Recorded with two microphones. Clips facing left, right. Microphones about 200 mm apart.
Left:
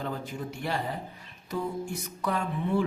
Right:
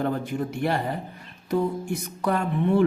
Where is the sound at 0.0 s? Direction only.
60° right (ahead or behind).